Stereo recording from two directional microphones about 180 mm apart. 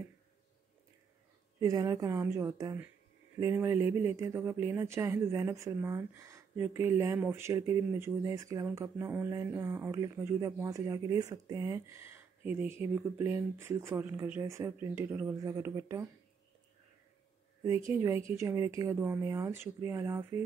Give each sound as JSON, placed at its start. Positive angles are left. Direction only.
{"t": 1.6, "sound": "speech", "side_deg": -20}
{"t": 17.6, "sound": "speech", "side_deg": -15}